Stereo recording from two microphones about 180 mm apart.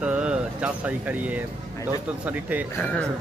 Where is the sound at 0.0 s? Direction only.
5° right (ahead or behind).